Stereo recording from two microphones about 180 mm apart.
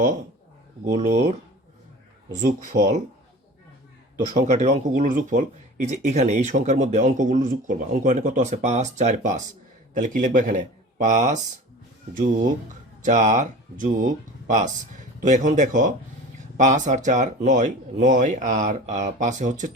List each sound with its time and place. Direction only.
1.1 s speech: 40° right (ahead or behind)
2.4 s speech: 45° right (ahead or behind)
4.4 s speech: 40° right (ahead or behind)
15.3 s speech: 45° right (ahead or behind)